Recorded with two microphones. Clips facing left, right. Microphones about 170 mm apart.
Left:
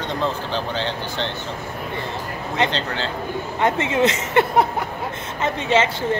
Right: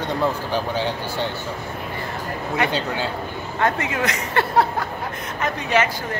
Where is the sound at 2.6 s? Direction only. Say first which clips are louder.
Even; 10° right (ahead or behind).